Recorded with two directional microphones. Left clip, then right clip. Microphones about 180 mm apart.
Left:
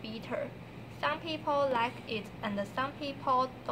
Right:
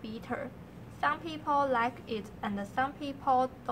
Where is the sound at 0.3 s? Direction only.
20° right (ahead or behind).